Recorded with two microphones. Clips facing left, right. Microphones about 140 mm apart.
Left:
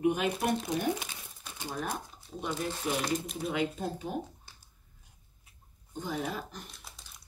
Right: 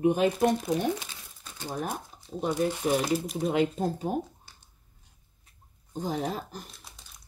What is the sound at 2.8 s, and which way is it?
Speech, 45° right (ahead or behind).